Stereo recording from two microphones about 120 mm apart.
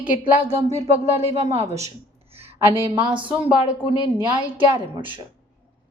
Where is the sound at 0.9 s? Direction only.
55° right (ahead or behind).